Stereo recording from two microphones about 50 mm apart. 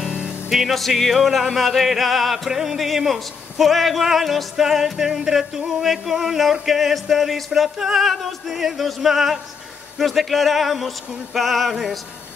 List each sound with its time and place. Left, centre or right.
0.0 s music: right
0.5 s music: centre